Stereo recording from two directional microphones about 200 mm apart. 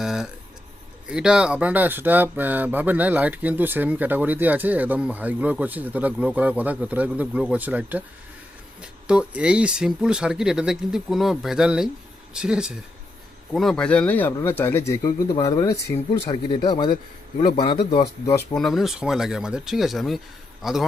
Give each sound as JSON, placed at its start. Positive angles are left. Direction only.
{"t": 0.0, "sound": "a sound", "side_deg": 0}
{"t": 1.0, "sound": "speech", "side_deg": -5}
{"t": 18.5, "sound": "speech", "side_deg": 0}